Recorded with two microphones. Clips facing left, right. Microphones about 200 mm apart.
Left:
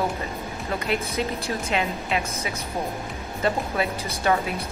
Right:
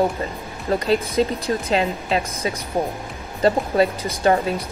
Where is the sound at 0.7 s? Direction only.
30° right (ahead or behind).